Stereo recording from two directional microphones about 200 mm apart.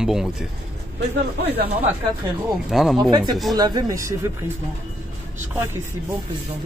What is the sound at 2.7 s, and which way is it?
Speech, centre (ahead or behind).